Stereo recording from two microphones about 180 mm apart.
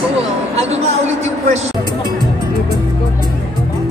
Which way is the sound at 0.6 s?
35° right (ahead or behind).